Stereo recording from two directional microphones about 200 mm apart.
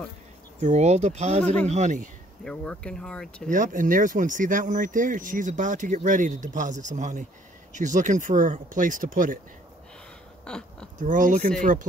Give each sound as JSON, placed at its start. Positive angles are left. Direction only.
{"t": 0.6, "sound": "speech", "side_deg": -35}
{"t": 1.4, "sound": "speech", "side_deg": 5}
{"t": 1.7, "sound": "speech", "side_deg": -35}
{"t": 2.4, "sound": "speech", "side_deg": 5}
{"t": 3.4, "sound": "speech", "side_deg": -40}
{"t": 10.4, "sound": "speech", "side_deg": 5}
{"t": 11.0, "sound": "speech", "side_deg": -40}